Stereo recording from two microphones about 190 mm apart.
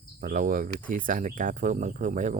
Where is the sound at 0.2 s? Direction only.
45° right (ahead or behind).